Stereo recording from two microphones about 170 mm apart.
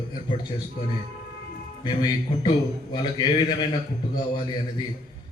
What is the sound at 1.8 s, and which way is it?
A man's voice, 25° left (ahead or behind).